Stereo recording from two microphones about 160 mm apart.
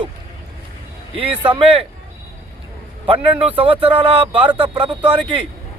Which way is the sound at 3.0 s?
35° right (ahead or behind).